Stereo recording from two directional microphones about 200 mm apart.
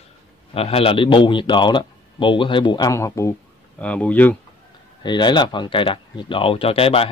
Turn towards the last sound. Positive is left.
turn(degrees=30)  # may be behind; listen again after turning